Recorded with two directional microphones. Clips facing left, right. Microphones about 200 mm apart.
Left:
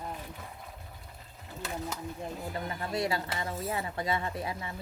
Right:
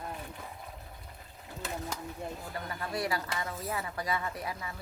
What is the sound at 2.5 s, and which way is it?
Speech, 25° left (ahead or behind).